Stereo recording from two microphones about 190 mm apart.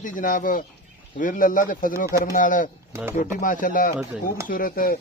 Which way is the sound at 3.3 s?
45° left (ahead or behind).